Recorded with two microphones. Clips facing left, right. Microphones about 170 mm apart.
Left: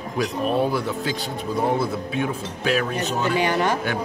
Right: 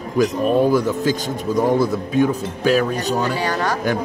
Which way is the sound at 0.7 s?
40° right (ahead or behind).